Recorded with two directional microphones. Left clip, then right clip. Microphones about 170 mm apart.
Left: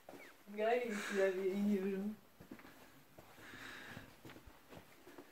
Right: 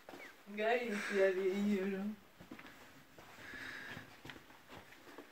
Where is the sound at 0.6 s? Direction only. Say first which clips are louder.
Right 1 dB; 10° left (ahead or behind).